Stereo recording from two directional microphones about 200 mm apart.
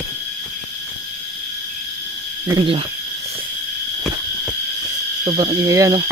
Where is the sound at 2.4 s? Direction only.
25° right (ahead or behind).